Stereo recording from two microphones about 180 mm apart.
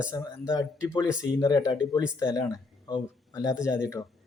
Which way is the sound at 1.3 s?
20° left (ahead or behind).